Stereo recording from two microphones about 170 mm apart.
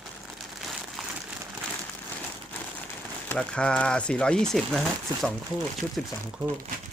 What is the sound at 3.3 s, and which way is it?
Speech, 5° left (ahead or behind).